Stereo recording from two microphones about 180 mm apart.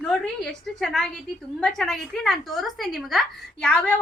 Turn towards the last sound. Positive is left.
turn(degrees=5)  # may be behind; listen again after turning